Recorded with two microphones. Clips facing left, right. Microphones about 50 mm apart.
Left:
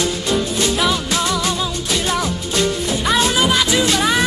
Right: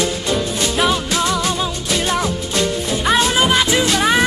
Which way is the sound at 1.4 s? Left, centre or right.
Centre.